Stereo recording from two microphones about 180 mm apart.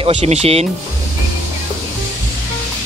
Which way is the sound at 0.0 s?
40° right (ahead or behind).